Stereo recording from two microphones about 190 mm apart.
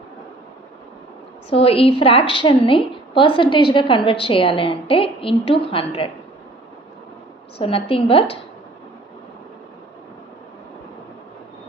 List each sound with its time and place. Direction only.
1.5 s a woman's voice: 30° left (ahead or behind)
7.6 s a woman's voice: 30° left (ahead or behind)